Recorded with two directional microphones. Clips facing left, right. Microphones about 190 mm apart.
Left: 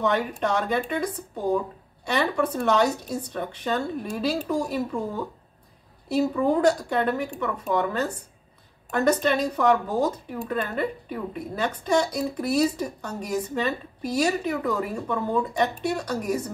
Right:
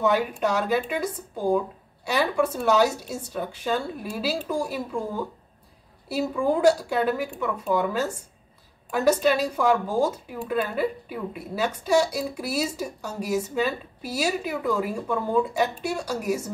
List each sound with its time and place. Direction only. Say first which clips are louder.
0.0 s speech: right 2 dB; 5° right (ahead or behind)
6.0 s speech: left 2 dB; 10° right (ahead or behind)